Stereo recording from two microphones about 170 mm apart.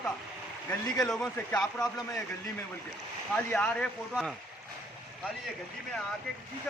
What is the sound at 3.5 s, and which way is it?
Speech, 5° left (ahead or behind).